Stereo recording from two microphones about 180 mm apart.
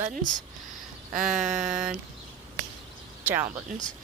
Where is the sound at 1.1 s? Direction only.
Centre (ahead or behind).